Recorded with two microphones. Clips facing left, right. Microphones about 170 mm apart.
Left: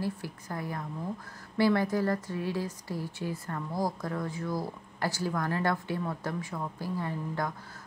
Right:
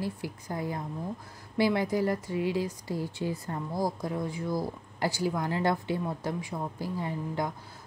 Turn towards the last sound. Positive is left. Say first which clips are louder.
# right 1 dB
turn(degrees=-15)  # may be behind; listen again after turning